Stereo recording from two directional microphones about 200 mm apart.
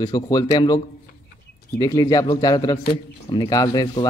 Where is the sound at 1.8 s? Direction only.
20° left (ahead or behind).